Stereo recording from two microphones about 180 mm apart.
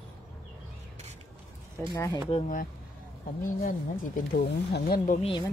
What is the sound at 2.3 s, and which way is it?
Speech, 45° left (ahead or behind).